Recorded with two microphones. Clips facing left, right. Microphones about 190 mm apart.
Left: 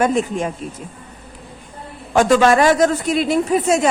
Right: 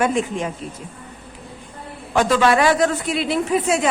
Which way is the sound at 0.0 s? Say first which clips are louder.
Left 3 dB; 40° left (ahead or behind).